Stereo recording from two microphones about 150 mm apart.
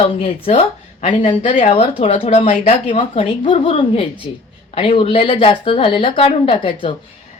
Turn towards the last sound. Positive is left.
turn(degrees=40)  # may be behind; listen again after turning